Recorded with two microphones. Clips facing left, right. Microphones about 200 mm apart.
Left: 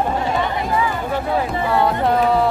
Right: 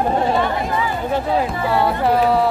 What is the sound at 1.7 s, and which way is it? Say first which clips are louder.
Speech: even; centre (ahead or behind).